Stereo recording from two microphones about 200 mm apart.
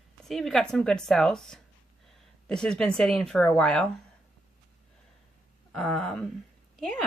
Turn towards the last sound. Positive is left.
turn(degrees=5)  # may be behind; listen again after turning